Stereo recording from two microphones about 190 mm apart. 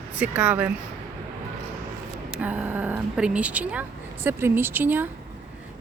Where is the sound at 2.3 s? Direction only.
5° right (ahead or behind).